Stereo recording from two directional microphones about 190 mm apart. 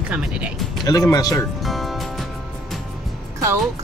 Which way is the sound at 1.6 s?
Centre (ahead or behind).